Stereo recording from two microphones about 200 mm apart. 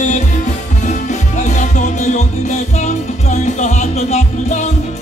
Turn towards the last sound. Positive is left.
turn(degrees=35)  # may be behind; listen again after turning